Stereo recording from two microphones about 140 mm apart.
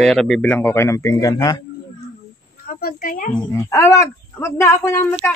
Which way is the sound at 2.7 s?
85° left.